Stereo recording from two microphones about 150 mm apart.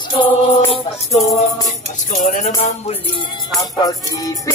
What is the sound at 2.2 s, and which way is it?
Music, 60° left (ahead or behind).